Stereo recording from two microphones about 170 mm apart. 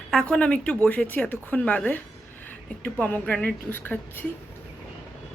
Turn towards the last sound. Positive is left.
turn(degrees=10)  # may be behind; listen again after turning